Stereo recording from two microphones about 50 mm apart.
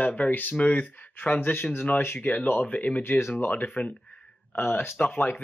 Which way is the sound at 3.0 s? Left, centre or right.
Left.